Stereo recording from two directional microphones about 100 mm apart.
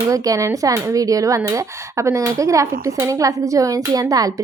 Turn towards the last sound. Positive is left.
turn(degrees=-35)  # may be behind; listen again after turning